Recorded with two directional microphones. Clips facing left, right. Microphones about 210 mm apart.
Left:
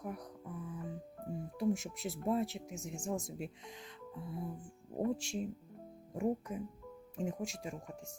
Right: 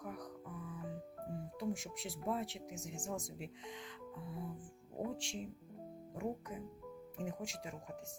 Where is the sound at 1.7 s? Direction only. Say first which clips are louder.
Left 7 dB; 25° left (ahead or behind).